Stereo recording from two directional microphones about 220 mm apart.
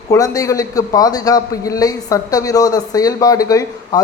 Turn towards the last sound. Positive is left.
turn(degrees=15)  # may be behind; listen again after turning